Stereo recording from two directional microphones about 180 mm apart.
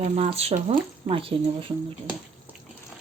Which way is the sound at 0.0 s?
35° right (ahead or behind).